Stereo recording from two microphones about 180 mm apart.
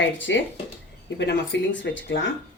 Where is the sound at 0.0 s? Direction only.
90° left.